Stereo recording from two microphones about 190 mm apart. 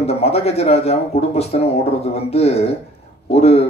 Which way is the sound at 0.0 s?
30° left (ahead or behind).